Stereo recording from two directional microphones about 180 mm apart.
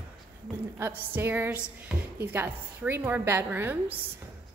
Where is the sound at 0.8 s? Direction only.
10° right (ahead or behind).